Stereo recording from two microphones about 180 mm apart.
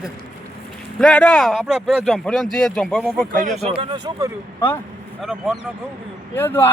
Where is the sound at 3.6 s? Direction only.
30° right (ahead or behind).